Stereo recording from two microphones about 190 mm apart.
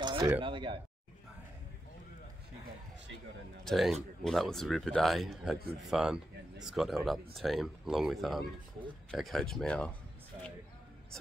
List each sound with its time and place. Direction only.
0.0 s a sound: 25° right (ahead or behind)
0.4 s speech: 25° right (ahead or behind)
3.6 s speech: centre (ahead or behind)